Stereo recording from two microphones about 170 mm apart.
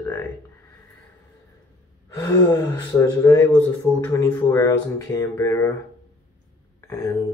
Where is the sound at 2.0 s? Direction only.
20° left (ahead or behind).